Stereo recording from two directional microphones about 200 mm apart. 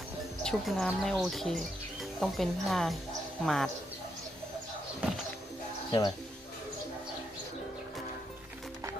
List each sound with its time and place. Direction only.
0.4 s speech: centre (ahead or behind)
5.9 s speech: 20° left (ahead or behind)